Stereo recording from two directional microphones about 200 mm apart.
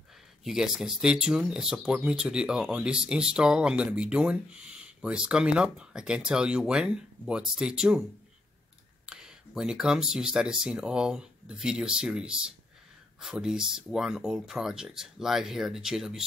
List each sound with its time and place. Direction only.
0.4 s speech: centre (ahead or behind)
9.0 s speech: 5° right (ahead or behind)